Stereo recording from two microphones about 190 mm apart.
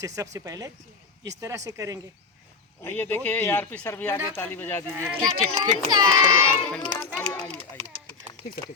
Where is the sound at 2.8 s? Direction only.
10° left (ahead or behind).